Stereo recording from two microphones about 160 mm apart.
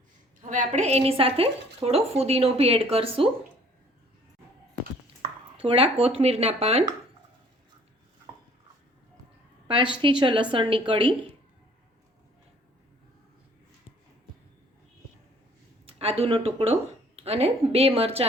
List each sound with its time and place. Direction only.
0.4 s speech: 50° right (ahead or behind)
5.5 s speech: 35° right (ahead or behind)
9.6 s speech: 30° right (ahead or behind)
15.9 s speech: 40° right (ahead or behind)